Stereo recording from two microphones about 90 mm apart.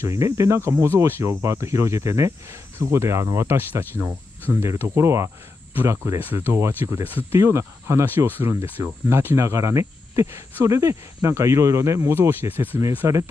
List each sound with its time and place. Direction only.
0.0 s speech: 35° right (ahead or behind)